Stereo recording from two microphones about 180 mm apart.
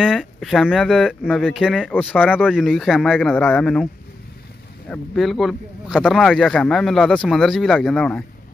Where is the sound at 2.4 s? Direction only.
5° right (ahead or behind).